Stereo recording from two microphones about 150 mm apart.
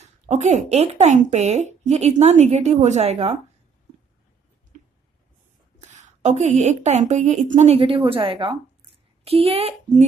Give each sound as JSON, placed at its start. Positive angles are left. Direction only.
{"t": 0.0, "sound": "speech", "side_deg": -50}
{"t": 5.9, "sound": "speech", "side_deg": -55}